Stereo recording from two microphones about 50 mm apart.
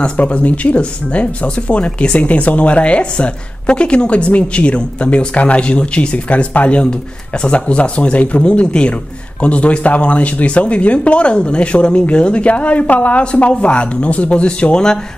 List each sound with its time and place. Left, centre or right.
0.0 s speech: left